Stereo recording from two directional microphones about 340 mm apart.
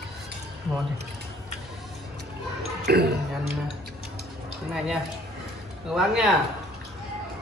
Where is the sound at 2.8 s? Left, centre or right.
Right.